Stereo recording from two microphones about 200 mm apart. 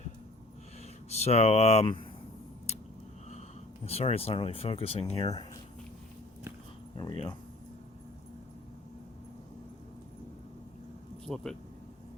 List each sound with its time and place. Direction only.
1.1 s speech: 30° left (ahead or behind)
3.8 s speech: 30° left (ahead or behind)
6.9 s speech: 25° left (ahead or behind)
11.4 s speech: centre (ahead or behind)